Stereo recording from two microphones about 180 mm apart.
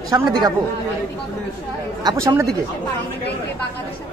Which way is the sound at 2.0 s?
20° right (ahead or behind).